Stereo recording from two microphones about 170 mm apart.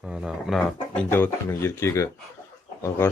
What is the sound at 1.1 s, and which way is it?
Speech, 10° left (ahead or behind).